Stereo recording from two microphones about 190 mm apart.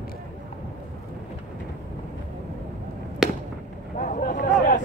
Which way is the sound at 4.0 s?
45° left (ahead or behind).